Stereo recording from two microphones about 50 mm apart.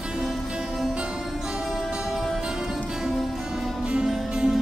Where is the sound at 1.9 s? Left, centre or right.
Centre.